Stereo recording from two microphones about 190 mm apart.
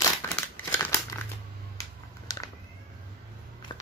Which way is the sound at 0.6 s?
10° left (ahead or behind).